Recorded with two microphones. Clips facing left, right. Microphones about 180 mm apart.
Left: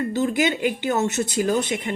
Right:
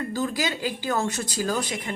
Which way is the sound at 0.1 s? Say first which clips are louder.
Left 6 dB; 25° left (ahead or behind).